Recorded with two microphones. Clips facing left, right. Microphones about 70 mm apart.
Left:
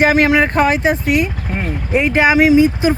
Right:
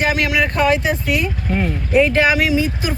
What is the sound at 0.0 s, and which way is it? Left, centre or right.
Speech, left.